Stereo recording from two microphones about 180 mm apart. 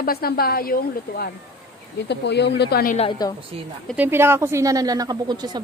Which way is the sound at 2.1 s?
70° left (ahead or behind).